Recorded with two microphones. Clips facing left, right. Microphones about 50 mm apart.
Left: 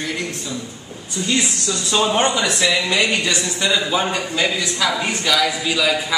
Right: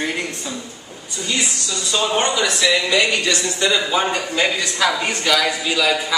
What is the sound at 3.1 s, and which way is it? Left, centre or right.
Speech, centre.